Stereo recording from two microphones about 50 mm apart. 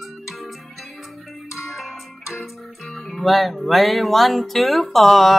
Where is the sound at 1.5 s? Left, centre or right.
Centre.